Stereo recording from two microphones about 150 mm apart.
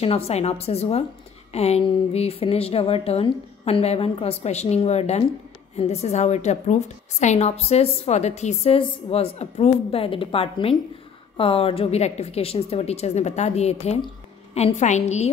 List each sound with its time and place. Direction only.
0.0 s a woman's voice: 40° left (ahead or behind)